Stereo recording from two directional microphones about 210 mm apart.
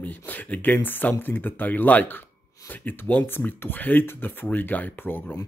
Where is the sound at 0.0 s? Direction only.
10° left (ahead or behind).